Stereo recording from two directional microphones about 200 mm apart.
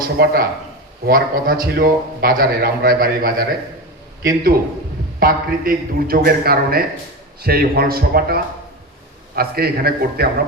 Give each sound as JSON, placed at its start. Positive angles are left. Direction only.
{"t": 0.0, "sound": "a man's voice", "side_deg": -50}
{"t": 5.2, "sound": "a man's voice", "side_deg": -45}